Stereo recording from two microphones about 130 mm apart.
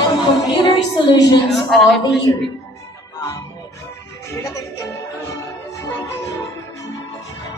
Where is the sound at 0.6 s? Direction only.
35° left (ahead or behind).